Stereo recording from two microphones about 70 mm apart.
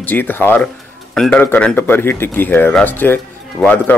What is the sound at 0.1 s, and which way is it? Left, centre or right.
Speech, left.